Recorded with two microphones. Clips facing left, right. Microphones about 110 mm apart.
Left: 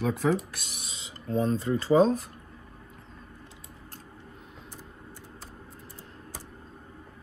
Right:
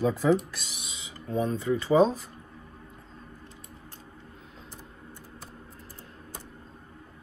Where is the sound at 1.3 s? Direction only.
15° right (ahead or behind).